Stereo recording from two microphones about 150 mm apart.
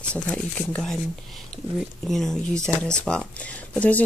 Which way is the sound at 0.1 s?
5° left (ahead or behind).